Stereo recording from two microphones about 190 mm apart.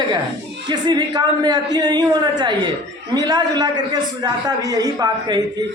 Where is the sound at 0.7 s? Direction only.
20° right (ahead or behind).